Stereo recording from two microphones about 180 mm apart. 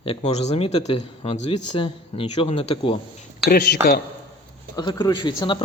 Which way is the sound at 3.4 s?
65° left (ahead or behind).